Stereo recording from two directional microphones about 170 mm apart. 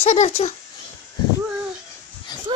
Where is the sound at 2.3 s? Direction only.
25° left (ahead or behind).